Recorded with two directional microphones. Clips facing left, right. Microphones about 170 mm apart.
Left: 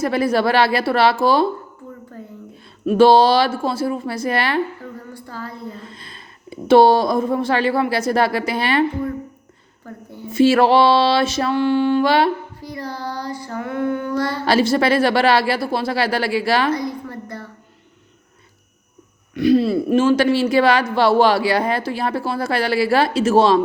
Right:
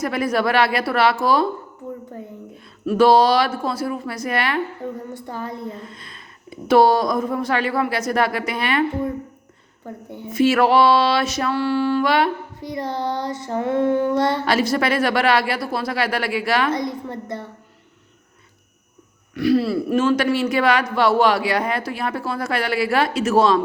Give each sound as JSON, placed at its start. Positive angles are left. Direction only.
{"t": 0.0, "sound": "speech", "side_deg": 30}
{"t": 2.8, "sound": "a woman's voice", "side_deg": 25}
{"t": 4.8, "sound": "speech", "side_deg": -20}
{"t": 5.8, "sound": "speech", "side_deg": 35}
{"t": 9.8, "sound": "child singing", "side_deg": -20}
{"t": 10.3, "sound": "a woman's voice", "side_deg": 30}
{"t": 12.5, "sound": "child singing", "side_deg": -20}
{"t": 14.4, "sound": "speech", "side_deg": 30}
{"t": 16.7, "sound": "child singing", "side_deg": -20}
{"t": 19.3, "sound": "speech", "side_deg": 20}